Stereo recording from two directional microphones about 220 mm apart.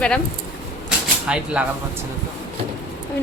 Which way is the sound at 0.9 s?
5° right (ahead or behind).